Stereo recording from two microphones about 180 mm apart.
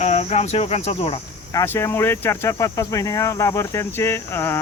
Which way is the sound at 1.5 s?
20° left (ahead or behind).